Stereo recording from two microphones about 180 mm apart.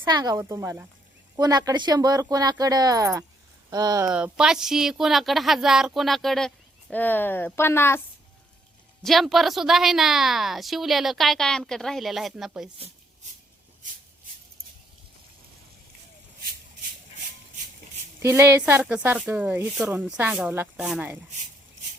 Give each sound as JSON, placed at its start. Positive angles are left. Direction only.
{"t": 0.1, "sound": "speech", "side_deg": -20}
{"t": 4.1, "sound": "a woman's voice", "side_deg": -5}
{"t": 9.0, "sound": "a woman's voice", "side_deg": 0}
{"t": 18.2, "sound": "speech", "side_deg": -15}